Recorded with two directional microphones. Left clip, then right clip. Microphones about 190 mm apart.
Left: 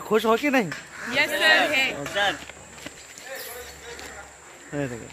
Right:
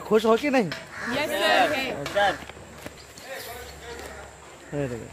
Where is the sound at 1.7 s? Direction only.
15° right (ahead or behind).